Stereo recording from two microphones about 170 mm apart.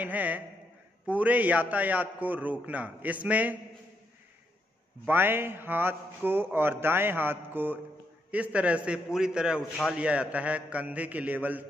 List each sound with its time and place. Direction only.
0.0 s a sound: 10° right (ahead or behind)
1.0 s a man's voice: 10° right (ahead or behind)
5.0 s a man's voice: 10° right (ahead or behind)